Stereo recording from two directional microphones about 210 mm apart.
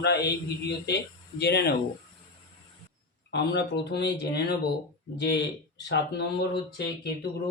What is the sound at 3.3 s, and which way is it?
Speech, 55° left (ahead or behind).